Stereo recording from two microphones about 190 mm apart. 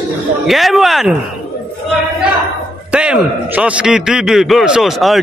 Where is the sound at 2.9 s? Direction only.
5° right (ahead or behind).